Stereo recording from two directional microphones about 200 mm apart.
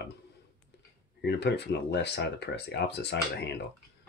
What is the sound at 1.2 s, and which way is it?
Speech, 55° left (ahead or behind).